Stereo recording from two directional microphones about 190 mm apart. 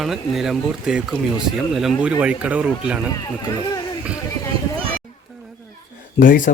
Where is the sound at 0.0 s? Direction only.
Centre (ahead or behind).